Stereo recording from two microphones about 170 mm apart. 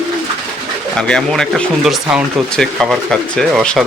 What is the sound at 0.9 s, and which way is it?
Speech, 5° left (ahead or behind).